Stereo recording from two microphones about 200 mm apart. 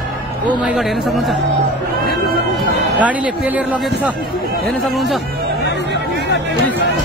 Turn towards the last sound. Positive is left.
turn(degrees=0)  # may be behind; listen again after turning